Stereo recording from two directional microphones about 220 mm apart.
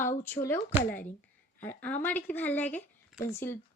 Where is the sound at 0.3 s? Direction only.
10° left (ahead or behind).